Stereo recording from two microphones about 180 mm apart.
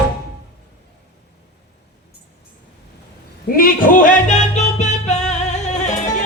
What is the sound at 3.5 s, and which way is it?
Music, 50° left (ahead or behind).